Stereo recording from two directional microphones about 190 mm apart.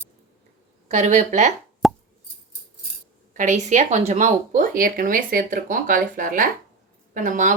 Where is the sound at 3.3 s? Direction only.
40° right (ahead or behind).